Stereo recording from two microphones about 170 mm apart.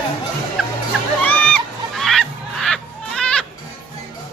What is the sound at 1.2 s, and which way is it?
Goose, 10° left (ahead or behind).